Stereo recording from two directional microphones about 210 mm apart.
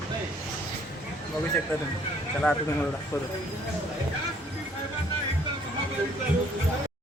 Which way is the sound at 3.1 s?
15° left (ahead or behind).